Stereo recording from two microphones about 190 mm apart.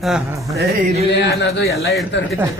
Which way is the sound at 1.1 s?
60° left (ahead or behind).